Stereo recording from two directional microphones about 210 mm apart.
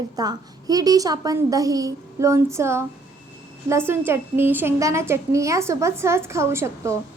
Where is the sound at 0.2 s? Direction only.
20° right (ahead or behind).